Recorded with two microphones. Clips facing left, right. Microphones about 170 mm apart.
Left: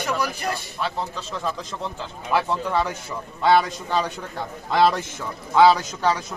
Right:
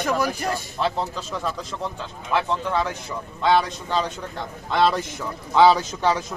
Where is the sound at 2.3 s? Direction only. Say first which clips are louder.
Left 1 dB; 5° left (ahead or behind).